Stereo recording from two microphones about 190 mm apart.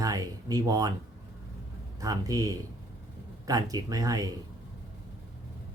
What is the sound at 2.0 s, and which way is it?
Speech, 20° right (ahead or behind).